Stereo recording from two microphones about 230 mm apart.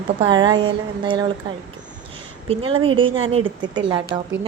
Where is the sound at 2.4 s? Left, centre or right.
Right.